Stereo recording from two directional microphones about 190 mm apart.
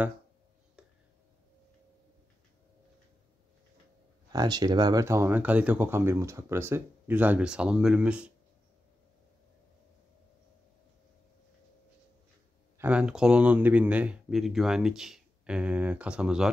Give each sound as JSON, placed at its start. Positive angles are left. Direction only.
{"t": 4.3, "sound": "speech", "side_deg": -20}
{"t": 12.7, "sound": "speech", "side_deg": -5}